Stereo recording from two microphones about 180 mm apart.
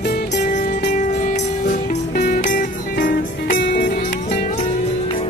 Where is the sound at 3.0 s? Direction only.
65° left (ahead or behind).